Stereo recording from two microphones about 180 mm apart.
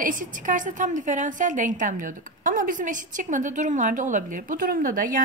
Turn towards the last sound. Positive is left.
turn(degrees=-50)  # may be behind; listen again after turning